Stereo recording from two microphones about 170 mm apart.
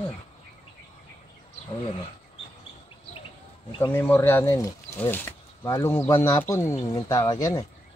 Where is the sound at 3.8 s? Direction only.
15° left (ahead or behind).